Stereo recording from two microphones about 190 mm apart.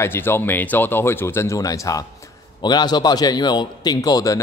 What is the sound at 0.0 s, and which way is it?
A man's voice, 10° left (ahead or behind).